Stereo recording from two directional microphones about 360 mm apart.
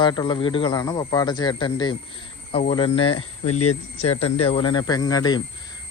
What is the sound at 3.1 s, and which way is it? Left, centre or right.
Speech, left.